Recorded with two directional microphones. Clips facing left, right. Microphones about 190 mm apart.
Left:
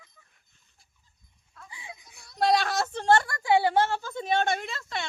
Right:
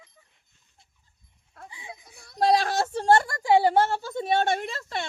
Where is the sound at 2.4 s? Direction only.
40° right (ahead or behind).